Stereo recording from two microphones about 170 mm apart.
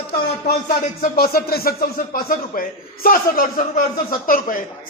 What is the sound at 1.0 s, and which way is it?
Speech, 60° left (ahead or behind).